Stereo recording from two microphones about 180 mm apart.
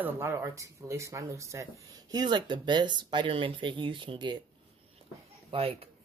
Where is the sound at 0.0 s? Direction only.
15° right (ahead or behind).